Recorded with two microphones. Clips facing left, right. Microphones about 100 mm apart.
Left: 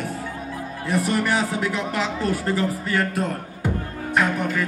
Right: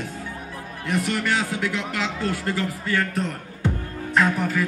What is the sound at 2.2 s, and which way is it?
Speech, 20° left (ahead or behind).